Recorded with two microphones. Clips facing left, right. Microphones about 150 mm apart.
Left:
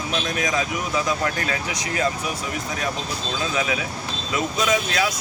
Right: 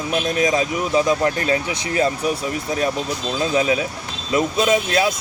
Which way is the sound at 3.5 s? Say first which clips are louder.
Right 8 dB; 35° right (ahead or behind).